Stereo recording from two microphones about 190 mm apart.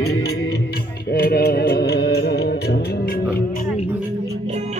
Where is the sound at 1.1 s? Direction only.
55° left (ahead or behind).